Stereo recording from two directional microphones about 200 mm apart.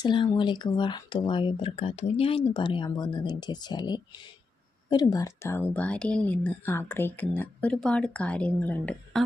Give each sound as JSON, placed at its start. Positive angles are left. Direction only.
{"t": 0.0, "sound": "speech", "side_deg": 25}